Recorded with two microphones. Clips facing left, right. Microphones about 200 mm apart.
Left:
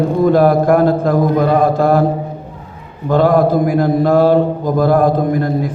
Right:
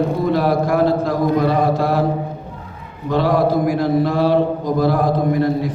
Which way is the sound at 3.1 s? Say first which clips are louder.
Left 5 dB; 50° left (ahead or behind).